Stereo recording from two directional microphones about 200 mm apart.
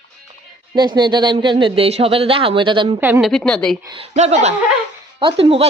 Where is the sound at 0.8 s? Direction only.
20° right (ahead or behind).